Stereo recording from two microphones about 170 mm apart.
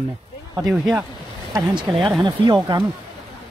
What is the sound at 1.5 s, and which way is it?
Speech, 20° right (ahead or behind).